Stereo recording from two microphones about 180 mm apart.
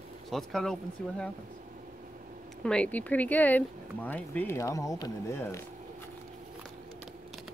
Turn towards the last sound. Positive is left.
turn(degrees=15)  # may be behind; listen again after turning